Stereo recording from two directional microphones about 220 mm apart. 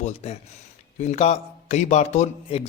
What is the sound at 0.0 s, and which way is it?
A man's voice, 30° left (ahead or behind).